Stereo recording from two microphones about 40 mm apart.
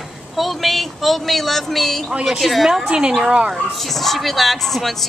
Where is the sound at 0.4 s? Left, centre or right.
Centre.